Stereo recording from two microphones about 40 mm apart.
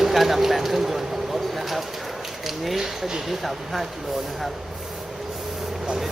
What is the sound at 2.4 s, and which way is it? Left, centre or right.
Speech, centre.